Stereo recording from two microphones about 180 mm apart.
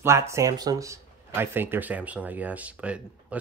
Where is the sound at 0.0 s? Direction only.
15° right (ahead or behind).